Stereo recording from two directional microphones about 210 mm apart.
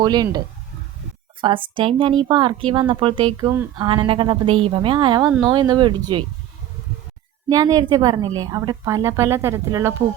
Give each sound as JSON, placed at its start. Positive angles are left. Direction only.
{"t": 0.0, "sound": "speech", "side_deg": -20}
{"t": 7.5, "sound": "a woman's voice", "side_deg": -15}